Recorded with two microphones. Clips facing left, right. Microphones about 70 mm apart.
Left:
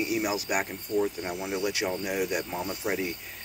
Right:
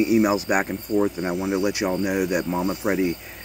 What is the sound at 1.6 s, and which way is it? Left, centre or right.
Speech, centre.